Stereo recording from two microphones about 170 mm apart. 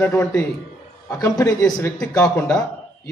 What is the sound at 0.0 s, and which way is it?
A man's voice, 15° left (ahead or behind).